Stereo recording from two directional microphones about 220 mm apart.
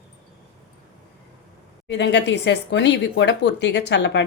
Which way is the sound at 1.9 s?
50° left (ahead or behind).